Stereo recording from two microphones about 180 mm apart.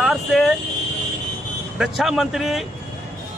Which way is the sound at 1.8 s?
Centre (ahead or behind).